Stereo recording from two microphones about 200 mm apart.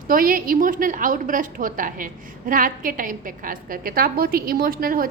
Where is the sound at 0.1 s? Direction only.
45° right (ahead or behind).